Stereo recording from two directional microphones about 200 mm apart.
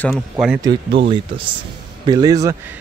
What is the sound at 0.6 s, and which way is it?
Speech, 25° right (ahead or behind).